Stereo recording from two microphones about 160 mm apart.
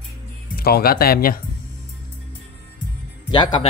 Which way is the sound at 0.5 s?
70° left (ahead or behind).